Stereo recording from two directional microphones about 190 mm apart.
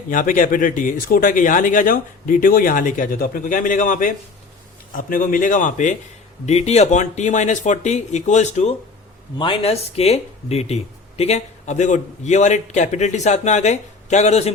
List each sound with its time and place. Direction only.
0.1 s a man's voice: 45° left (ahead or behind)